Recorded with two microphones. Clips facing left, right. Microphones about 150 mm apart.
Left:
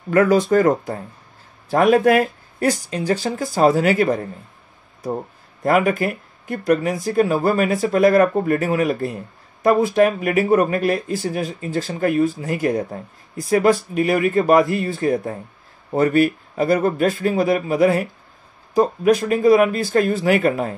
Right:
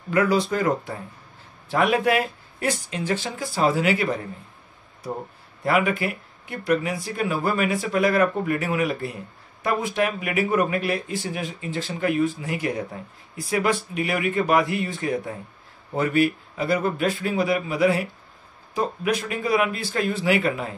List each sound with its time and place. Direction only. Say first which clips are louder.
0.1 s a man's voice: left 6 dB; 50° left (ahead or behind)
5.6 s a man's voice: left 5 dB; 45° left (ahead or behind)